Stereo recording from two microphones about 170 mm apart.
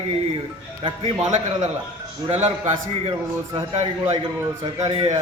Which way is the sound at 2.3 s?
40° right (ahead or behind).